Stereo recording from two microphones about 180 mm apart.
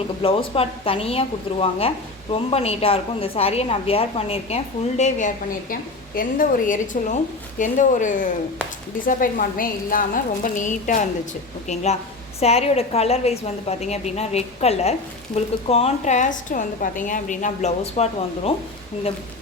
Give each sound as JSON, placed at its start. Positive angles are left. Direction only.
{"t": 0.2, "sound": "a woman's voice", "side_deg": 30}
{"t": 2.3, "sound": "a woman's voice", "side_deg": 35}